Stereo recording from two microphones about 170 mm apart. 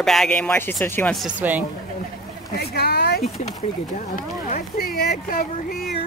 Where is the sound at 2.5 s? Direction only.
65° left (ahead or behind).